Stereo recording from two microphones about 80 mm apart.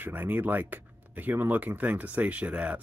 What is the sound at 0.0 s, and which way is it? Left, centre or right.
Speech, right.